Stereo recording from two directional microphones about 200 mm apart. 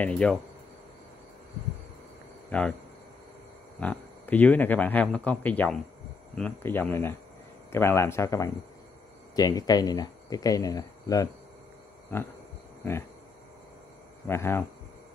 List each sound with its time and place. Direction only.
0.0 s cricket: 5° left (ahead or behind)
2.5 s speech: 5° left (ahead or behind)
3.8 s speech: 10° left (ahead or behind)
14.2 s speech: 10° left (ahead or behind)